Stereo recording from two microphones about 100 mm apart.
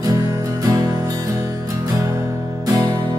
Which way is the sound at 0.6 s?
35° right (ahead or behind).